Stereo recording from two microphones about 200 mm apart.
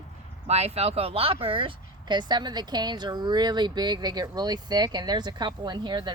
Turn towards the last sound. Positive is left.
turn(degrees=-20)  # may be behind; listen again after turning